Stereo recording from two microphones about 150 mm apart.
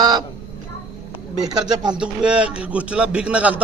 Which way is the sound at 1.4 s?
25° right (ahead or behind).